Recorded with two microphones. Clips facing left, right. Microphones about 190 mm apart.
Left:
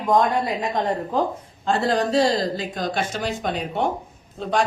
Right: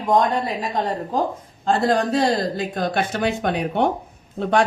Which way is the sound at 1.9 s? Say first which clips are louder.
Left 2 dB; 55° right (ahead or behind).